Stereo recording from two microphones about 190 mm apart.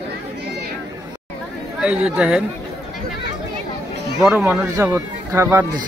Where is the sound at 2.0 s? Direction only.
5° right (ahead or behind).